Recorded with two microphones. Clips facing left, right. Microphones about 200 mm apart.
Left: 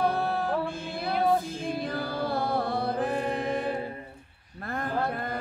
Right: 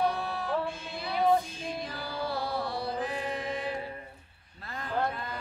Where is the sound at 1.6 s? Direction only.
55° left (ahead or behind).